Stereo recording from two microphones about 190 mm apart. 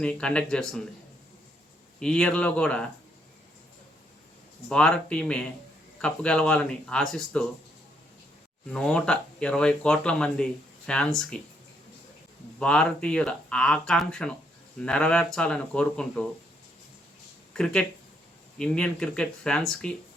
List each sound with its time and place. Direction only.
0.0 s speech: 5° left (ahead or behind)
2.0 s speech: 5° left (ahead or behind)
4.7 s speech: 5° left (ahead or behind)
8.7 s speech: 5° left (ahead or behind)
12.5 s speech: 5° left (ahead or behind)
17.5 s speech: 5° left (ahead or behind)